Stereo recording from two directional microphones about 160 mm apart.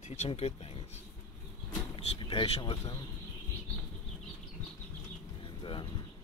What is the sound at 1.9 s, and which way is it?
Speech, 30° left (ahead or behind).